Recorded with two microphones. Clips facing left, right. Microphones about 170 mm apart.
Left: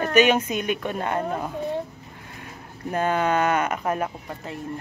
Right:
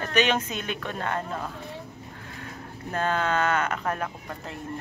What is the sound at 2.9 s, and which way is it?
A woman's voice, 15° left (ahead or behind).